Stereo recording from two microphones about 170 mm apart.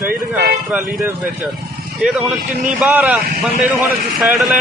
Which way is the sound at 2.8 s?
10° right (ahead or behind).